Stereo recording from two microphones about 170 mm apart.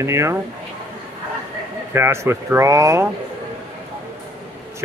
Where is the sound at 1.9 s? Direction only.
15° right (ahead or behind).